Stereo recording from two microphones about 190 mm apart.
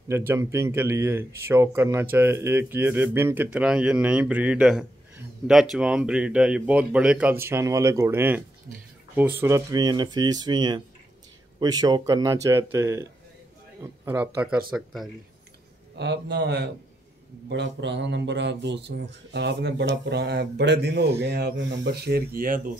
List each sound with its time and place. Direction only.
0.1 s speech: 15° right (ahead or behind)
14.0 s speech: 10° right (ahead or behind)
16.0 s speech: 65° right (ahead or behind)